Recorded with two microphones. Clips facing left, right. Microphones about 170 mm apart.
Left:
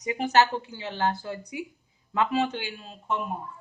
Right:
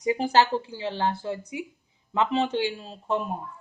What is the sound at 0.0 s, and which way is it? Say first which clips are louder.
Speech: right 1 dB; 30° right (ahead or behind).